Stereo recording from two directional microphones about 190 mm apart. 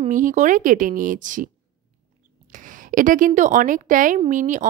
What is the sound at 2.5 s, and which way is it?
A woman's voice, 45° right (ahead or behind).